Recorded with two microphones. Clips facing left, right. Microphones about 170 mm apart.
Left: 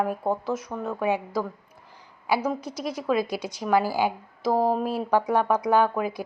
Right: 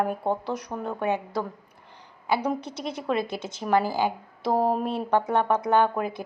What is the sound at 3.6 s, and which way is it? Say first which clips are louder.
Speech: even; 5° left (ahead or behind).